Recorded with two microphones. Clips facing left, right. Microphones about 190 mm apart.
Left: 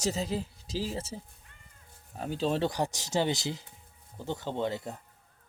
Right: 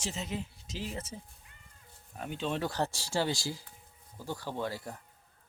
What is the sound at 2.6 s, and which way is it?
Speech, 15° left (ahead or behind).